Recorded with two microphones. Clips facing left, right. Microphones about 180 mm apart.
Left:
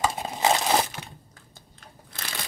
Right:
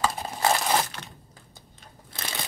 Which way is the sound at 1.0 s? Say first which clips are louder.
Left 2 dB; 15° left (ahead or behind).